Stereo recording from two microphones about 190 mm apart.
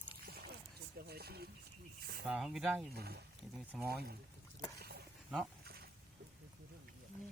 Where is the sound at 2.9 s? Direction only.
55° right (ahead or behind).